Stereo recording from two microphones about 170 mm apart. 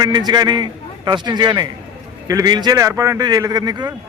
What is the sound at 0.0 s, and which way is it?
A man's voice, 25° right (ahead or behind).